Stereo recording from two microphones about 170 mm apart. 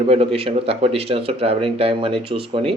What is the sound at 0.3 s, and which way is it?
Speech, 35° right (ahead or behind).